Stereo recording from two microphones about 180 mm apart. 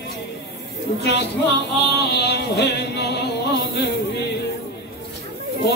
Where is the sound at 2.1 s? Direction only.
65° left (ahead or behind).